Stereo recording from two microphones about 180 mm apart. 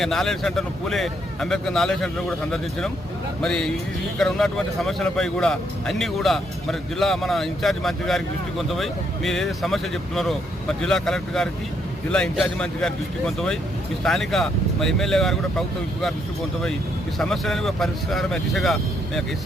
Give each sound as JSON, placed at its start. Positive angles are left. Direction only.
{"t": 0.0, "sound": "speech", "side_deg": 0}
{"t": 17.2, "sound": "speech", "side_deg": 0}